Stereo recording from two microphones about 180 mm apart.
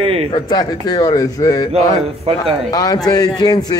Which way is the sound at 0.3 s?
20° left (ahead or behind).